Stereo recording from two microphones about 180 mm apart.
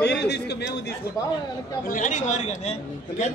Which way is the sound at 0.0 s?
70° left (ahead or behind).